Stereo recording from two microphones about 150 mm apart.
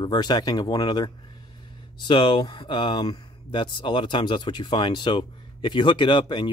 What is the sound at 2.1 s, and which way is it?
Speech, 30° left (ahead or behind).